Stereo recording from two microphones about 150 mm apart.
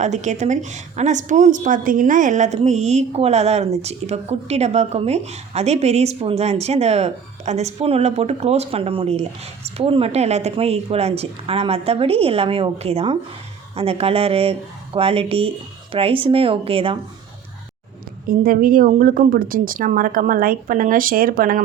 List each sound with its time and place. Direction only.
0.0 s a woman's voice: 50° right (ahead or behind)
18.3 s speech: 70° right (ahead or behind)